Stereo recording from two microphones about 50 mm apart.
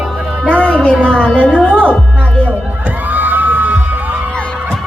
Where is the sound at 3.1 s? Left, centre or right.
Right.